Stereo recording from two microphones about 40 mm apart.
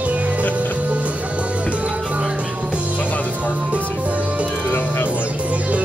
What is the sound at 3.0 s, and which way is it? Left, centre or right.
Music, left.